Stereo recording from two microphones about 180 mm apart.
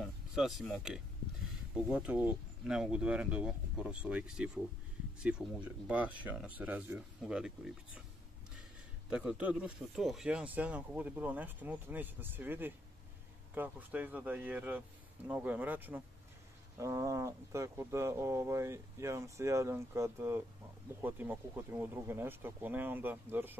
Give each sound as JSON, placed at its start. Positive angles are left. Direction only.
{"t": 0.3, "sound": "speech", "side_deg": 0}
{"t": 9.1, "sound": "speech", "side_deg": -5}